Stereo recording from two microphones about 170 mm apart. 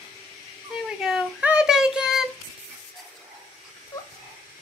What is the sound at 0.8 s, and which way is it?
Child singing, 5° right (ahead or behind).